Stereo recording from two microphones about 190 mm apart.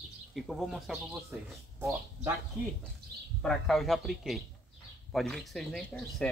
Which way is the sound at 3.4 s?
Centre (ahead or behind).